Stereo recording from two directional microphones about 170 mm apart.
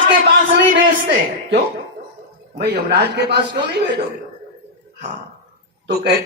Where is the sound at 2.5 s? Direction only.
70° right (ahead or behind).